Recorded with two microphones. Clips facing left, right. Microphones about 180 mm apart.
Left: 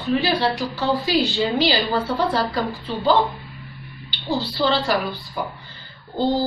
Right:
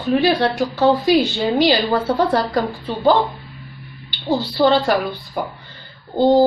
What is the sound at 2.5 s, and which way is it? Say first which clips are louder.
Speech: right 4 dB; 55° right (ahead or behind).